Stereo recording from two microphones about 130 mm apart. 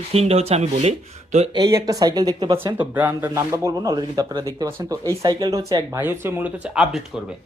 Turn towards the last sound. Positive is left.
turn(degrees=-5)  # may be behind; listen again after turning